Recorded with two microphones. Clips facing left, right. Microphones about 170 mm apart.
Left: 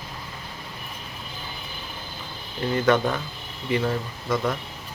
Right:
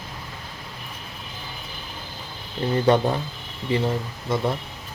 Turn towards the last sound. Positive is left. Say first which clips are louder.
# right 1 dB
turn(degrees=-25)  # may be behind; listen again after turning